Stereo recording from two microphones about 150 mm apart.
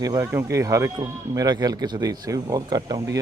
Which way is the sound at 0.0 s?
20° right (ahead or behind).